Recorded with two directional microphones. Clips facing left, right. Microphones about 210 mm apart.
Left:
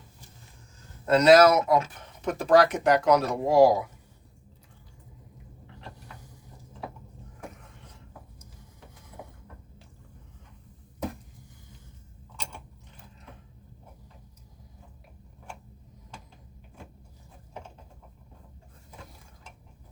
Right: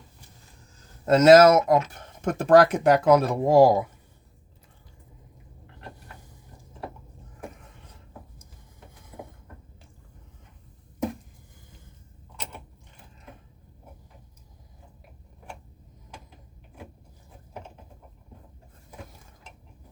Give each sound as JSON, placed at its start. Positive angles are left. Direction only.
{"t": 1.0, "sound": "speech", "side_deg": -45}